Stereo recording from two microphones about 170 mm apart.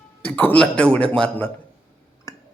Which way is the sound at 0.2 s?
10° left (ahead or behind).